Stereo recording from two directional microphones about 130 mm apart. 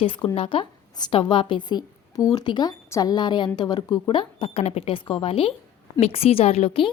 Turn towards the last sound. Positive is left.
turn(degrees=45)  # may be behind; listen again after turning